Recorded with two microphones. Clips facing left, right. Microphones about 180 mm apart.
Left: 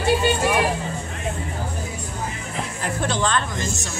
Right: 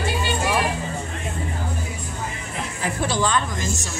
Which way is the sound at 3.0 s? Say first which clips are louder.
Right 1 dB; 10° right (ahead or behind).